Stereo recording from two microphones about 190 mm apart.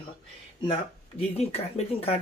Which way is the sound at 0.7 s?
30° left (ahead or behind).